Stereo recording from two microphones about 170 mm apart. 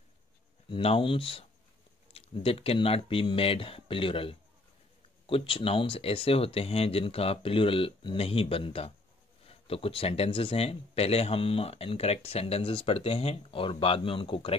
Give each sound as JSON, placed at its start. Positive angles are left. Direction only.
{"t": 0.7, "sound": "speech", "side_deg": 35}